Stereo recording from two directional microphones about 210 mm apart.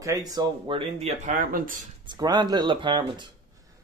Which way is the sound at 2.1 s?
20° right (ahead or behind).